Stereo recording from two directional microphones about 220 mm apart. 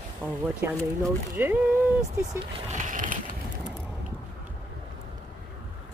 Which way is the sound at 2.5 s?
30° right (ahead or behind).